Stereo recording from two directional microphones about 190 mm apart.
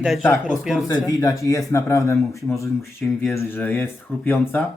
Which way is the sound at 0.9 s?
15° left (ahead or behind).